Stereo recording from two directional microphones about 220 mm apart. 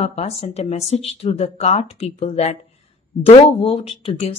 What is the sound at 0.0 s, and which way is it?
A woman's voice, 30° left (ahead or behind).